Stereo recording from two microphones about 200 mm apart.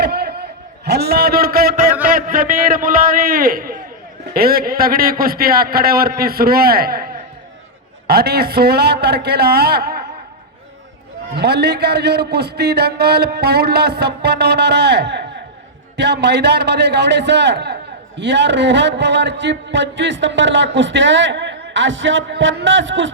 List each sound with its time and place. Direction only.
0.0 s a sound: 55° right (ahead or behind)
2.1 s a man's voice: 45° right (ahead or behind)
11.3 s a man's voice: 55° right (ahead or behind); by 23.1 s 70° right (ahead or behind)